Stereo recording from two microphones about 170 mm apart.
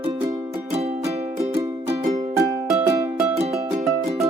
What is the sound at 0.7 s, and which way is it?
Music, 40° right (ahead or behind).